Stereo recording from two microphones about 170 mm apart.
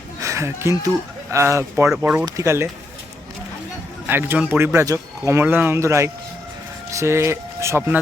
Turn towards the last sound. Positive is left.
turn(degrees=-15)  # may be behind; listen again after turning